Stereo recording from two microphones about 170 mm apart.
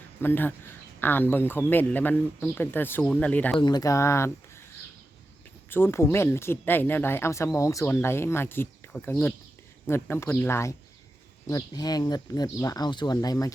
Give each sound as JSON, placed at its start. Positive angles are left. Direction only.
{"t": 0.2, "sound": "speech", "side_deg": 10}
{"t": 3.6, "sound": "speech", "side_deg": 25}
{"t": 5.7, "sound": "speech", "side_deg": 15}